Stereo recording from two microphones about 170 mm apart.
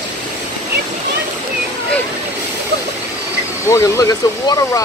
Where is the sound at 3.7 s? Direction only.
20° left (ahead or behind).